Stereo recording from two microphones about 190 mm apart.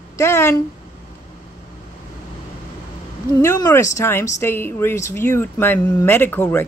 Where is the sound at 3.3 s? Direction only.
20° left (ahead or behind).